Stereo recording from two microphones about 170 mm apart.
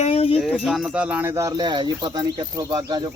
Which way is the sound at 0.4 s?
Centre (ahead or behind).